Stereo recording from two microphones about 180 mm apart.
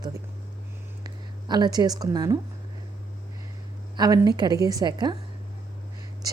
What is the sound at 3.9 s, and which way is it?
A woman's voice, 20° right (ahead or behind).